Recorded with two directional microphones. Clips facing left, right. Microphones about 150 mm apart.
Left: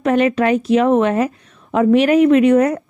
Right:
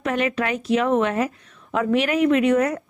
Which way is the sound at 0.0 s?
35° left (ahead or behind).